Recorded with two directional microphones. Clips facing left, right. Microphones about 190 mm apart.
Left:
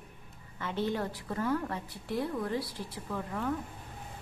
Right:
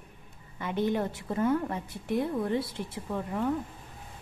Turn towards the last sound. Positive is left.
turn(degrees=-20)  # may be behind; listen again after turning